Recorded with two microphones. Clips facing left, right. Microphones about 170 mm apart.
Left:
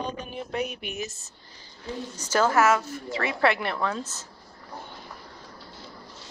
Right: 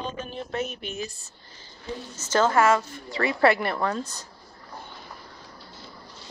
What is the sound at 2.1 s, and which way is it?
A woman's voice, 10° left (ahead or behind).